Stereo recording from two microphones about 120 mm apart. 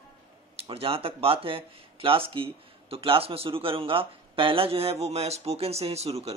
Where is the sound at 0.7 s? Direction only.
50° right (ahead or behind).